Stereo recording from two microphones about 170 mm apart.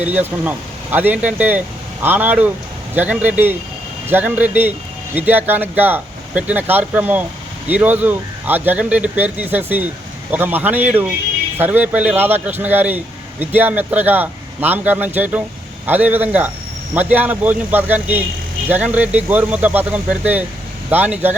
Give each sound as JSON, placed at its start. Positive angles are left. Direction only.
{"t": 0.0, "sound": "speech", "side_deg": -10}